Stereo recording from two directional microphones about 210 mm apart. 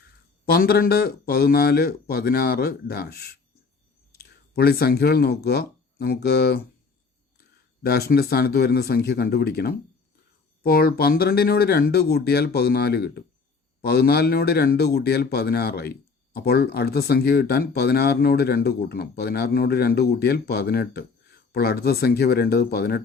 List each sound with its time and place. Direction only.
0.4 s speech: 45° left (ahead or behind)